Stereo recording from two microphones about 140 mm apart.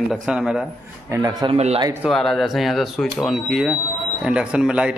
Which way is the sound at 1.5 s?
50° right (ahead or behind).